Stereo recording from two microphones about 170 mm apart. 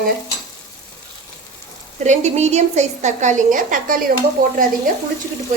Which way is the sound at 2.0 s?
40° right (ahead or behind).